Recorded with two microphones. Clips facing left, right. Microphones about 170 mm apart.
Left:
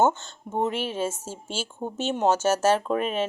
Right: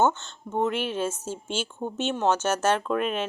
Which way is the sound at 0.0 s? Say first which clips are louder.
Left 1 dB; 10° left (ahead or behind).